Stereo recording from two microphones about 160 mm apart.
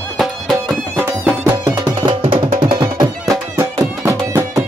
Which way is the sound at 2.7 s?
25° right (ahead or behind).